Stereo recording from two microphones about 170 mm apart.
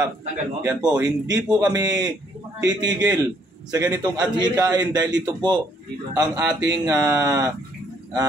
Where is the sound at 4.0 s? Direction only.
20° right (ahead or behind).